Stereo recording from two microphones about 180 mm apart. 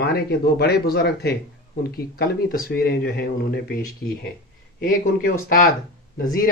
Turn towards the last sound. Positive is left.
turn(degrees=55)  # may be behind; listen again after turning